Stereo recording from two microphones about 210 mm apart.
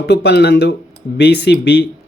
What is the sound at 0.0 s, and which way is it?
Speech, 55° left (ahead or behind).